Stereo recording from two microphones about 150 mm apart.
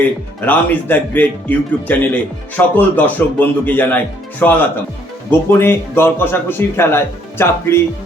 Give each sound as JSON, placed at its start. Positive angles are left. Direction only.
{"t": 0.4, "sound": "speech", "side_deg": 10}